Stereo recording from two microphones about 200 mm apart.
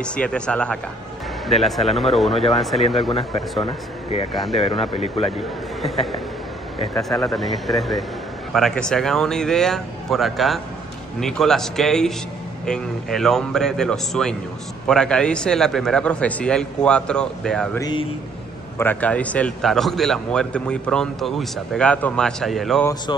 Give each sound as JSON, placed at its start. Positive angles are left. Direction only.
{"t": 0.0, "sound": "a man's voice", "side_deg": 5}
{"t": 3.1, "sound": "speech", "side_deg": 25}
{"t": 5.8, "sound": "a man's voice", "side_deg": 0}
{"t": 6.8, "sound": "speech", "side_deg": 15}
{"t": 7.3, "sound": "a man's voice", "side_deg": 0}
{"t": 17.7, "sound": "speech", "side_deg": 20}
{"t": 18.8, "sound": "a man's voice", "side_deg": 10}